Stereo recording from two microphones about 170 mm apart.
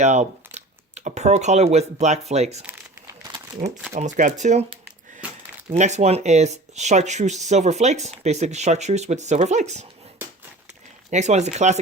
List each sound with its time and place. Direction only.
0.0 s typing: 40° right (ahead or behind)
2.3 s speech: 40° right (ahead or behind)
3.6 s speech: 50° right (ahead or behind)
11.1 s speech: 45° right (ahead or behind)